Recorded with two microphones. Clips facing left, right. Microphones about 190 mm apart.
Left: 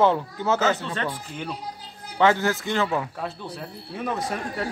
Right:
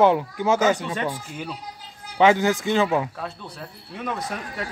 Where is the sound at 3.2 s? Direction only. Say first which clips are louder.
Left 2 dB; 5° left (ahead or behind).